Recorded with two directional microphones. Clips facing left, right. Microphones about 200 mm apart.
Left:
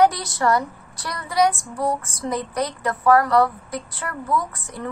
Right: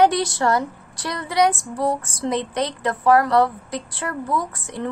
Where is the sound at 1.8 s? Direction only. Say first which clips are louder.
Right 2 dB; 25° right (ahead or behind).